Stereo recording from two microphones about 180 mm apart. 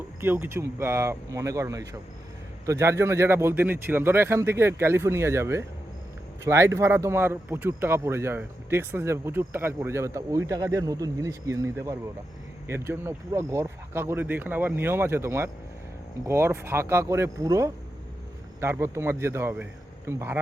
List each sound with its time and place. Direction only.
0.2 s speech: 10° right (ahead or behind)